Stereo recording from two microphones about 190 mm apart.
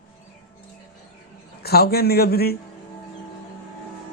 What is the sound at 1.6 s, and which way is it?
Speech, 55° left (ahead or behind).